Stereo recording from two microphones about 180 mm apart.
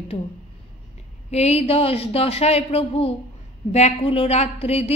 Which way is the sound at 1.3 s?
35° left (ahead or behind).